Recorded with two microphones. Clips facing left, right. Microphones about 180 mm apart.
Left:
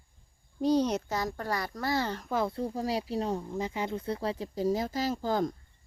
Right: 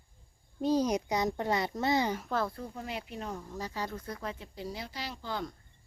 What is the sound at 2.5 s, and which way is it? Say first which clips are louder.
Speech: left 8 dB; 30° left (ahead or behind).